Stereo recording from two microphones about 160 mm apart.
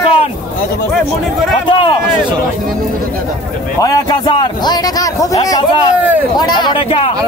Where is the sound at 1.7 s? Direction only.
30° left (ahead or behind).